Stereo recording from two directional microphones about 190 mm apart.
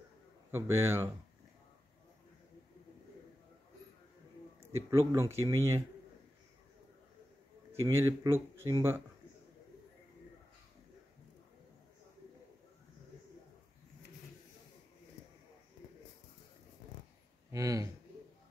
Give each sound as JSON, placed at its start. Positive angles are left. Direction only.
{"t": 0.5, "sound": "speech", "side_deg": -15}
{"t": 4.6, "sound": "speech", "side_deg": -15}
{"t": 7.8, "sound": "speech", "side_deg": -15}
{"t": 17.5, "sound": "speech", "side_deg": -20}